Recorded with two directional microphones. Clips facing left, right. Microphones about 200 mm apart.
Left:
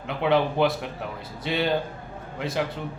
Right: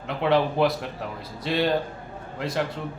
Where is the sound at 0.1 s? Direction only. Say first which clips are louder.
Even; centre (ahead or behind).